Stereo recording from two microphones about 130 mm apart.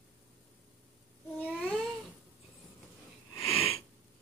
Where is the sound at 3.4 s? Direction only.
45° left (ahead or behind).